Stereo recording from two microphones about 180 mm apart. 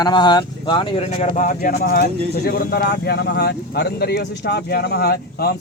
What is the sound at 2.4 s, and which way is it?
Speech, 65° left (ahead or behind).